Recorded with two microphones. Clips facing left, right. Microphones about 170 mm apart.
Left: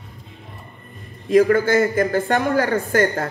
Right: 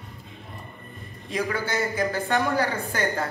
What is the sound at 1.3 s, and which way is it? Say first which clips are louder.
Speech: left 13 dB; 50° left (ahead or behind).